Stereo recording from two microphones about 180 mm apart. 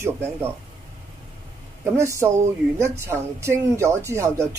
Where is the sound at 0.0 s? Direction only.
15° right (ahead or behind).